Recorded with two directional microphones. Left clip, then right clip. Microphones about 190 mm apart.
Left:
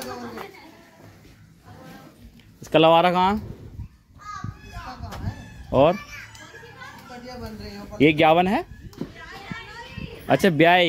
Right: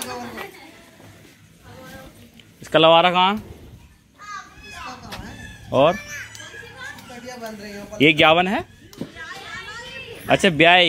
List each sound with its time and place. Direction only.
2.6 s speech: 20° left (ahead or behind)
5.7 s speech: 20° left (ahead or behind)
8.0 s speech: 10° left (ahead or behind)
10.2 s speech: 15° left (ahead or behind)